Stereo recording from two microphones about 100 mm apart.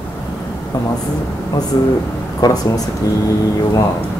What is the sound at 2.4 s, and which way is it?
Speech, 40° left (ahead or behind).